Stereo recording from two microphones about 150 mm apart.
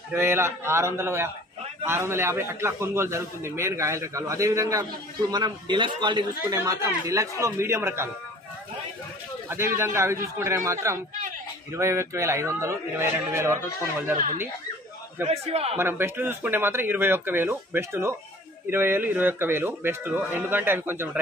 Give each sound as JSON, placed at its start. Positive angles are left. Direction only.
{"t": 0.1, "sound": "a man's voice", "side_deg": -15}
{"t": 9.5, "sound": "a man's voice", "side_deg": -15}
{"t": 14.1, "sound": "speech", "side_deg": -60}
{"t": 15.2, "sound": "speech", "side_deg": -45}
{"t": 15.8, "sound": "a man's voice", "side_deg": -15}